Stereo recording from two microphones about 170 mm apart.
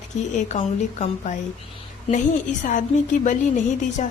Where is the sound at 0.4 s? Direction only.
45° left (ahead or behind).